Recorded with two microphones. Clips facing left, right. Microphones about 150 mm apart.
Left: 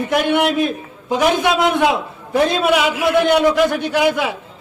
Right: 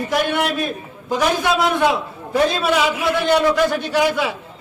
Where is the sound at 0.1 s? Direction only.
20° left (ahead or behind).